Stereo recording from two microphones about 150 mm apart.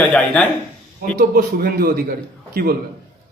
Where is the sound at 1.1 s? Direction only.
85° right.